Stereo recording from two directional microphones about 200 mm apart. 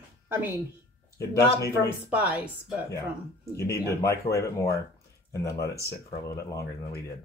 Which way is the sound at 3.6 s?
15° left (ahead or behind).